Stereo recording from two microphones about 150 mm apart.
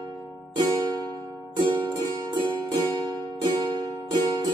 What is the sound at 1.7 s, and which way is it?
Music, 30° right (ahead or behind).